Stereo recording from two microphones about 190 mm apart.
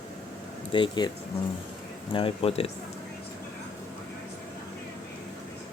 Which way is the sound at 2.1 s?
30° left (ahead or behind).